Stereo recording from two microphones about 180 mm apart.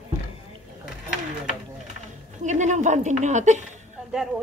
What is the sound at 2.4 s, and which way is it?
A woman's voice, 40° right (ahead or behind).